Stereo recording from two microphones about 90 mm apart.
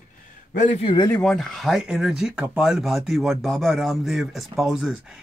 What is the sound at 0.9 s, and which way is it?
Speech, 90° left.